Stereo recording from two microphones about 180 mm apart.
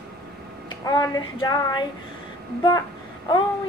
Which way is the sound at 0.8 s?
20° left (ahead or behind).